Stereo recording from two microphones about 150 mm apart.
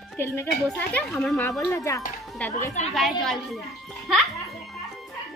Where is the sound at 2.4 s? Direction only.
10° left (ahead or behind).